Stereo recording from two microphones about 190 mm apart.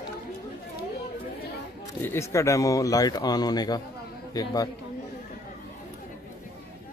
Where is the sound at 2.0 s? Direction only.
15° left (ahead or behind).